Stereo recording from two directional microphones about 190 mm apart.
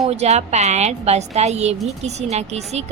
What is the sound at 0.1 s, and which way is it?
A woman's voice, 35° right (ahead or behind).